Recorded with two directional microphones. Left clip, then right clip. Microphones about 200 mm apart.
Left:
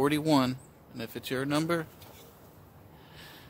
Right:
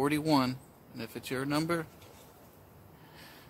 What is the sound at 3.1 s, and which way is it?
Snort, 15° left (ahead or behind).